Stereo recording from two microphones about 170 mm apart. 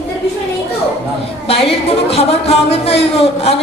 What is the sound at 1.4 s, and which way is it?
A woman's voice, 35° left (ahead or behind).